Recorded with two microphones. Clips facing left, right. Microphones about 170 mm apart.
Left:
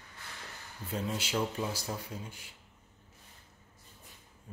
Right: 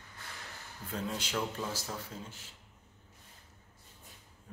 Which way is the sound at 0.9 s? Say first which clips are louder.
Left 2 dB; 10° left (ahead or behind).